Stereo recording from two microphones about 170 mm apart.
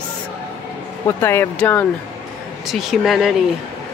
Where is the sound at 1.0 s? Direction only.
15° left (ahead or behind).